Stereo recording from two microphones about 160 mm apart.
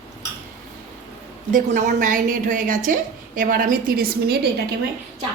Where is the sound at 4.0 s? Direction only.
75° right (ahead or behind).